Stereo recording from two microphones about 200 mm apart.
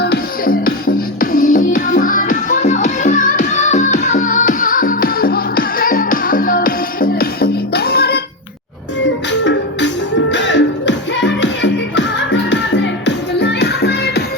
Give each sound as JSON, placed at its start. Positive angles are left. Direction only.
{"t": 0.0, "sound": "music", "side_deg": 50}
{"t": 9.3, "sound": "music", "side_deg": 60}